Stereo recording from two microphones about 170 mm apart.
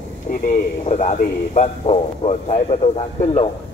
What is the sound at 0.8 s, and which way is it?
A man's voice, 45° left (ahead or behind).